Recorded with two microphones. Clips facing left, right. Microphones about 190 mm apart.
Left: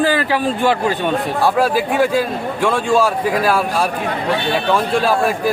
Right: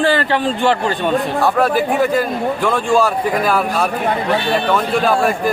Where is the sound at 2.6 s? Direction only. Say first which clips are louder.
Left 1 dB; 5° left (ahead or behind).